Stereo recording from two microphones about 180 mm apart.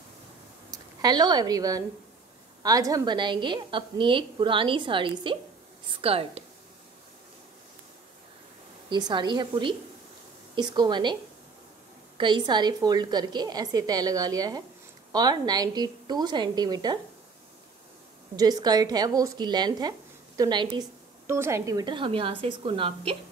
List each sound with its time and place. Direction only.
0.7 s a woman's voice: 20° right (ahead or behind)
8.8 s a woman's voice: 25° right (ahead or behind)
12.2 s a woman's voice: 25° right (ahead or behind)
18.3 s a woman's voice: 20° right (ahead or behind)